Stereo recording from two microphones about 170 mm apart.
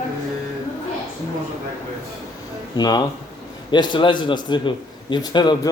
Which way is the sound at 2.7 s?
25° left (ahead or behind).